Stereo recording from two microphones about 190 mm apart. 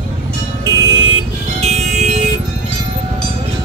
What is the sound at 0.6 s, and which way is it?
Music, 25° right (ahead or behind).